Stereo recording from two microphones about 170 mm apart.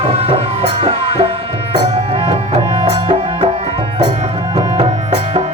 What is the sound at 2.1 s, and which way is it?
Music, 35° right (ahead or behind).